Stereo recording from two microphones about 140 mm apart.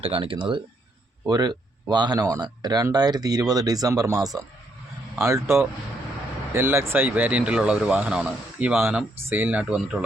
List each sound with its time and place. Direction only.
0.0 s speech: 40° right (ahead or behind); by 10.0 s 5° right (ahead or behind)